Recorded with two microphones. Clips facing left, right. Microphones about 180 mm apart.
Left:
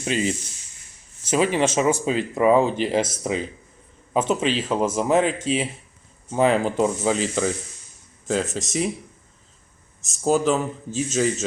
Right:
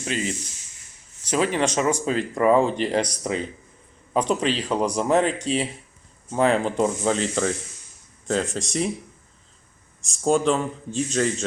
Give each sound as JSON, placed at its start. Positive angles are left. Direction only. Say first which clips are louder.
{"t": 0.0, "sound": "speech", "louder": "left 3 dB", "side_deg": 20}
{"t": 1.4, "sound": "speech", "louder": "left 2 dB", "side_deg": 5}
{"t": 10.0, "sound": "speech", "louder": "even", "side_deg": 5}